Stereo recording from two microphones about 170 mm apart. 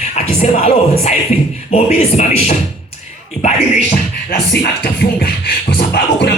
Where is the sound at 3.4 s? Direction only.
40° left (ahead or behind).